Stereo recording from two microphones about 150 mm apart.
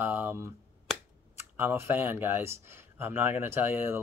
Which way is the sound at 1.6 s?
15° right (ahead or behind).